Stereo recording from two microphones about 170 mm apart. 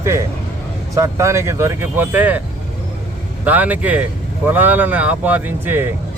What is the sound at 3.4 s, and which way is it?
Speech, 10° right (ahead or behind).